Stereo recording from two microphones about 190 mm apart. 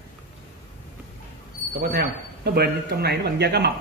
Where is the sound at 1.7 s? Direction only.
55° right (ahead or behind).